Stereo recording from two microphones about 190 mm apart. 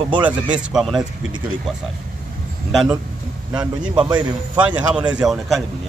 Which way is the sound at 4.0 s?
25° right (ahead or behind).